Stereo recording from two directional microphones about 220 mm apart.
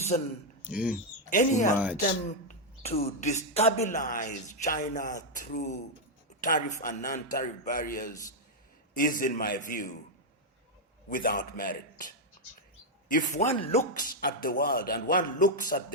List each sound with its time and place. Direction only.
0.1 s speech: 30° left (ahead or behind)
0.6 s speech: 5° right (ahead or behind)
1.3 s speech: 35° left (ahead or behind)
11.1 s speech: 40° left (ahead or behind)
14.2 s speech: 40° left (ahead or behind)